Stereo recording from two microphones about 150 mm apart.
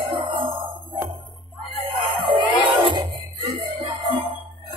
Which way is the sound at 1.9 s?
30° right (ahead or behind).